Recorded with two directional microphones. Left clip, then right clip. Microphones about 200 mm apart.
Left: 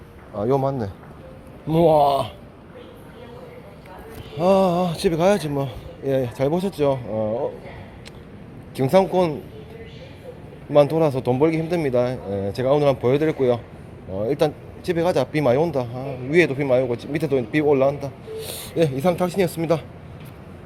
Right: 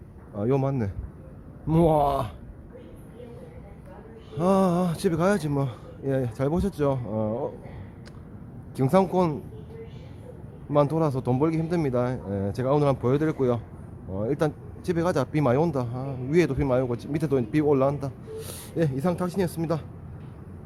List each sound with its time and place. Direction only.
0.3 s speech: 15° right (ahead or behind)
4.4 s speech: 10° right (ahead or behind)
8.7 s speech: 5° right (ahead or behind)
10.7 s speech: 5° right (ahead or behind)